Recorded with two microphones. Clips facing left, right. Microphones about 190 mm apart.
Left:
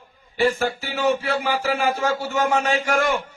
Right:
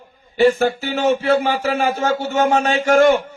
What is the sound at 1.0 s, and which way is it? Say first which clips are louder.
A man's voice: right 5 dB; 25° right (ahead or behind).